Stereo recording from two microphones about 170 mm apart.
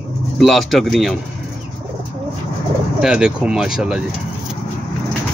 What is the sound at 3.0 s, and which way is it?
Speech, 5° right (ahead or behind).